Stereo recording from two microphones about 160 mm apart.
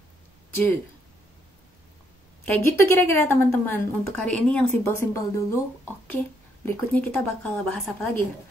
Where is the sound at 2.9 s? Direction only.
15° left (ahead or behind).